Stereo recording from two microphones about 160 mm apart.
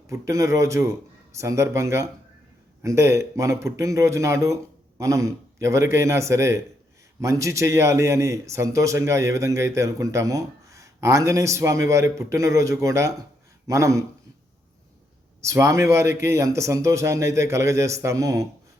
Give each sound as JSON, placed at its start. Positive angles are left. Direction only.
{"t": 0.1, "sound": "a man's voice", "side_deg": -20}
{"t": 15.4, "sound": "a man's voice", "side_deg": -20}